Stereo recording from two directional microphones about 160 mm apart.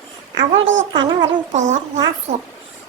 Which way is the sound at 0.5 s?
30° right (ahead or behind).